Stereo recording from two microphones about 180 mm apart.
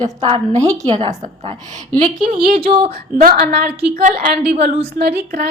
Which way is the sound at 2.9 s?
50° right (ahead or behind).